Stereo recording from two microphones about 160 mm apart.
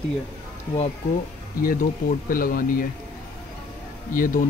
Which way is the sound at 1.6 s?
60° left (ahead or behind).